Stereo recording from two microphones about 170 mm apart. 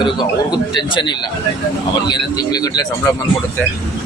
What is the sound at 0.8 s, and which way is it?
A man's voice, 25° left (ahead or behind).